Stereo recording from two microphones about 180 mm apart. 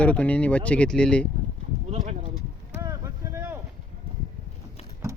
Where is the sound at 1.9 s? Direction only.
40° right (ahead or behind).